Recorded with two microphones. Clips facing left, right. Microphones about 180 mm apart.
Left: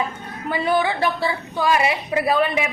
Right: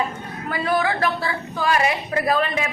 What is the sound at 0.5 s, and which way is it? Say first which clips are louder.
A woman's voice: left 1 dB; 20° left (ahead or behind).